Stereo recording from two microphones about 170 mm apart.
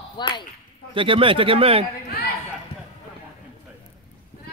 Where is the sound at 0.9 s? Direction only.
30° right (ahead or behind).